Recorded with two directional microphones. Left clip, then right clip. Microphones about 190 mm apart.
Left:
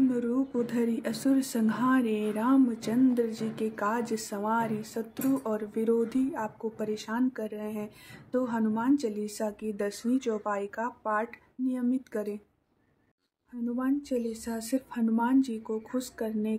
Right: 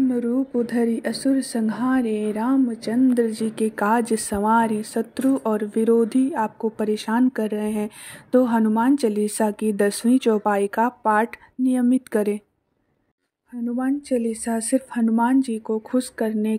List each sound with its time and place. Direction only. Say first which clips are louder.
0.1 s speech: right 7 dB; 25° right (ahead or behind)
3.2 s speech: right 8 dB; 40° right (ahead or behind)
13.7 s speech: right 7 dB; 30° right (ahead or behind)